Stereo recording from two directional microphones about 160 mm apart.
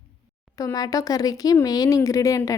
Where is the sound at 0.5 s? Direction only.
20° left (ahead or behind).